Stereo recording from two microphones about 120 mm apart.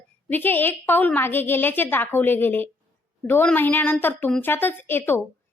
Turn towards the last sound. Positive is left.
turn(degrees=20)  # may be behind; listen again after turning